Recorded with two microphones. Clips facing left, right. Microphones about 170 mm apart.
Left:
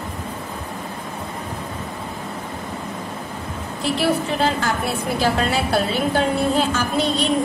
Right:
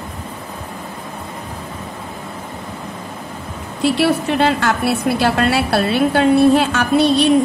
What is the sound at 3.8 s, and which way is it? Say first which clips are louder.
A woman's voice: right 5 dB; 70° right (ahead or behind).